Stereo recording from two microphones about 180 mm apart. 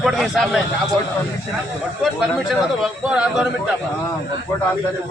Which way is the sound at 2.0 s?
Centre (ahead or behind).